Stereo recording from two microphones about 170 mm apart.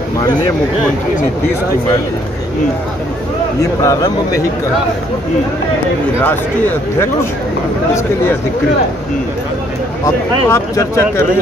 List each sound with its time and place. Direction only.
3.8 s speech: 20° left (ahead or behind)
6.2 s speech: 10° left (ahead or behind)
10.0 s speech: 15° left (ahead or behind)